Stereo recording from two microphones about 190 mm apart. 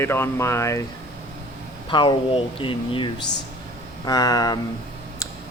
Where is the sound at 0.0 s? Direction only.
15° left (ahead or behind).